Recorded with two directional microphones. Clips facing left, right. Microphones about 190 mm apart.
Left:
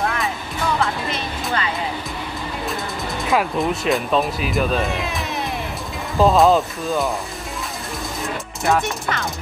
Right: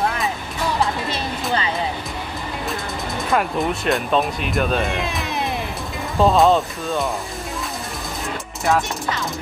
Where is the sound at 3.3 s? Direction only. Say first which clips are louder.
Left 1 dB; centre (ahead or behind).